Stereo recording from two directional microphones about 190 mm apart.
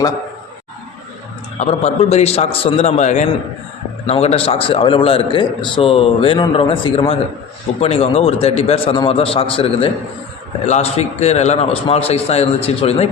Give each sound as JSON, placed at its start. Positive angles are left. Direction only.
{"t": 1.5, "sound": "a man's voice", "side_deg": 35}